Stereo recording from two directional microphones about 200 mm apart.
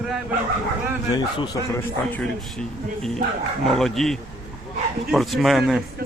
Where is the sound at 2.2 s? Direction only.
5° left (ahead or behind).